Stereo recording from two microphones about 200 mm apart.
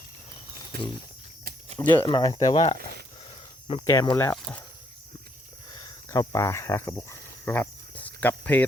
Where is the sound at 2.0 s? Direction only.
20° left (ahead or behind).